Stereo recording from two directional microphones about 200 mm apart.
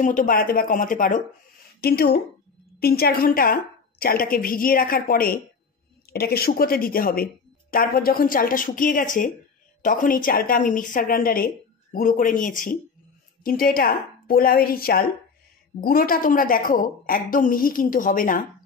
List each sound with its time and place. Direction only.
0.0 s a woman's voice: 40° left (ahead or behind)